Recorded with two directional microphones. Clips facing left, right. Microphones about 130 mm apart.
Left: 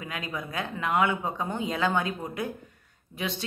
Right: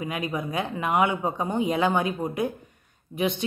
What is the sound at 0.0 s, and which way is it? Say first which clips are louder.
Speech: right 6 dB; 20° right (ahead or behind).